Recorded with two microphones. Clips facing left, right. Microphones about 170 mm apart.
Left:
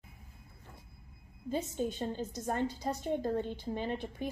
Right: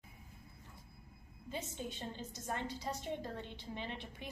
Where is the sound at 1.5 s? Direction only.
45° left (ahead or behind).